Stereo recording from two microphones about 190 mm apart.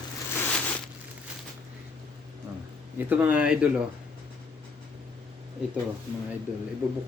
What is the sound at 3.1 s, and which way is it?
Speech, 10° right (ahead or behind).